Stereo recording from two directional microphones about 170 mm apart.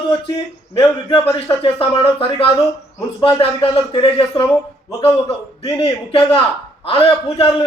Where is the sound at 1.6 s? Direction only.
35° left (ahead or behind).